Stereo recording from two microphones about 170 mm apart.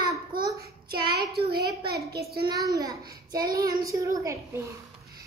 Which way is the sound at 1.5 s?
65° right (ahead or behind).